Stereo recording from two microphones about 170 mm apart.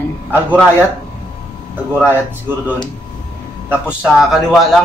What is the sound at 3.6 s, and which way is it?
A man's voice, 5° right (ahead or behind).